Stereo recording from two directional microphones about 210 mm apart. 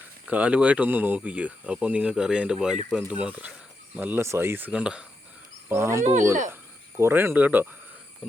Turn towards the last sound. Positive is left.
turn(degrees=-10)  # may be behind; listen again after turning